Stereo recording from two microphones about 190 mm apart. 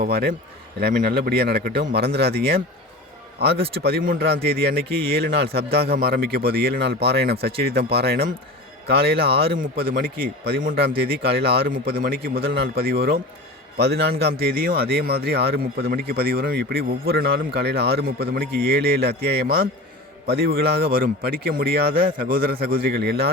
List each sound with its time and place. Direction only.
0.0 s a man's voice: 55° right (ahead or behind)